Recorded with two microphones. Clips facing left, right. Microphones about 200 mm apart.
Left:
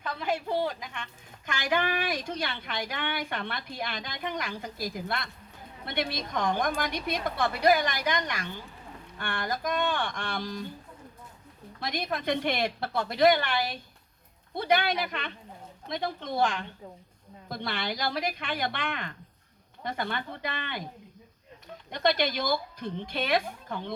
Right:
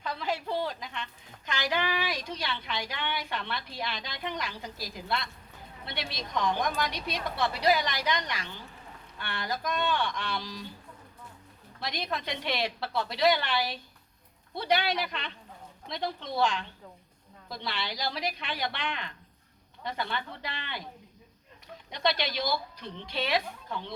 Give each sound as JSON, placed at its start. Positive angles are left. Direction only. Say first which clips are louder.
{"t": 0.2, "sound": "a woman's voice", "louder": "left 4 dB", "side_deg": 50}
{"t": 11.8, "sound": "a woman's voice", "louder": "left 2 dB", "side_deg": 50}
{"t": 21.8, "sound": "a woman's voice", "louder": "left 4 dB", "side_deg": 50}